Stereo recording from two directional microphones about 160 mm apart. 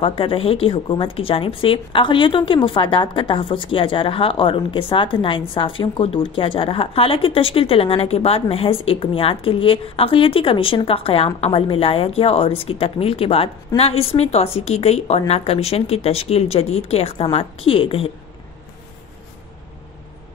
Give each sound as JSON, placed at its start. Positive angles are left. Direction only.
{"t": 0.0, "sound": "a woman's voice", "side_deg": 35}